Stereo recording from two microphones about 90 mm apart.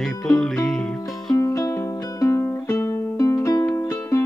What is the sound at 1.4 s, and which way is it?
Music, 35° left (ahead or behind).